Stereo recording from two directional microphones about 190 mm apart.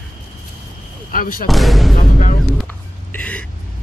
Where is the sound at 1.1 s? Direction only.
45° left (ahead or behind).